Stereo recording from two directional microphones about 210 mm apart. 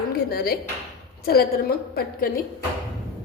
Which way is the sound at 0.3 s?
45° left (ahead or behind).